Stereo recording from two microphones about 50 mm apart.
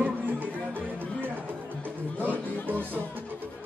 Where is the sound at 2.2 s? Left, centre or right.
Right.